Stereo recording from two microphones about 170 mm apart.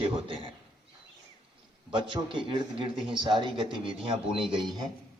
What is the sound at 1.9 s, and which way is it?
Speech, 30° right (ahead or behind).